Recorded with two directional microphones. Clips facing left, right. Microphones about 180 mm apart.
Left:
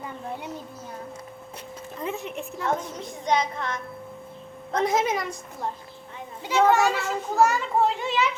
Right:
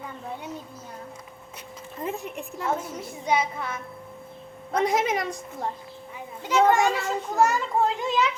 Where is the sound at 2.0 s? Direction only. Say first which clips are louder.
Even; centre (ahead or behind); by 5.1 s 15° right (ahead or behind).